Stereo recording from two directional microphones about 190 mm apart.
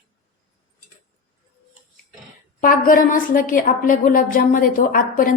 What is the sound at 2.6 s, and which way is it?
A woman's voice, 45° left (ahead or behind).